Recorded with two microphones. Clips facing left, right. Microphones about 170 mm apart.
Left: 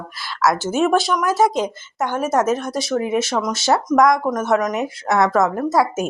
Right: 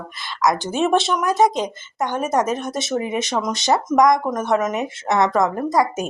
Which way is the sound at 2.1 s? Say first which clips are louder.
Left 2 dB; 5° left (ahead or behind).